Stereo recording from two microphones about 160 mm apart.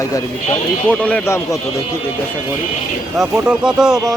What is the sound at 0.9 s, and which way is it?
Speech, 10° left (ahead or behind).